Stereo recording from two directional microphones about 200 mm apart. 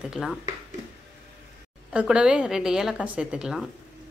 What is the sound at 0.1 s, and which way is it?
Speech, centre (ahead or behind).